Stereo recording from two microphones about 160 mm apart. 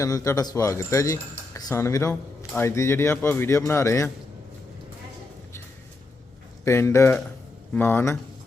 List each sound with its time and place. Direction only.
0.0 s speech: 20° left (ahead or behind)
6.7 s speech: 15° left (ahead or behind)